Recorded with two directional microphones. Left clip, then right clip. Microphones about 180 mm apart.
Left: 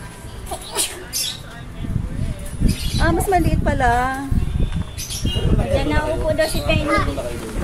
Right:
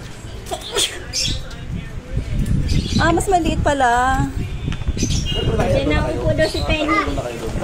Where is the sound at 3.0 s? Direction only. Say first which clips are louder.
Right 2 dB; 5° right (ahead or behind).